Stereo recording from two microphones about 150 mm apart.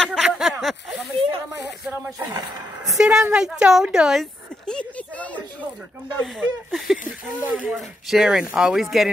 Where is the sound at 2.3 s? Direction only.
25° right (ahead or behind).